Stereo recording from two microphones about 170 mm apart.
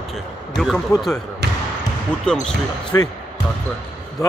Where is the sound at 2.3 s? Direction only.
5° left (ahead or behind).